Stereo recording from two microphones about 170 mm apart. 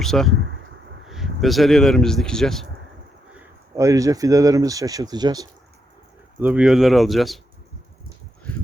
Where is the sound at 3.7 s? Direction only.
20° right (ahead or behind).